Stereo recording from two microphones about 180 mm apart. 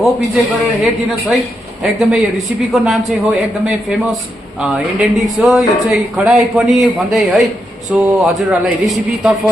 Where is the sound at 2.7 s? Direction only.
Centre (ahead or behind).